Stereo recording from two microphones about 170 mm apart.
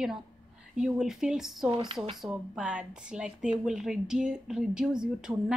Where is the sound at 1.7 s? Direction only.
25° right (ahead or behind).